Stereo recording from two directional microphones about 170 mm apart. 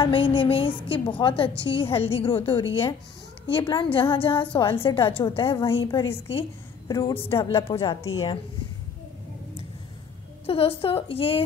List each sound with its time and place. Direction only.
0.0 s a woman's voice: 30° left (ahead or behind)
7.5 s a woman's voice: 35° left (ahead or behind)
7.8 s a woman's voice: 25° left (ahead or behind)
10.4 s a woman's voice: 35° left (ahead or behind)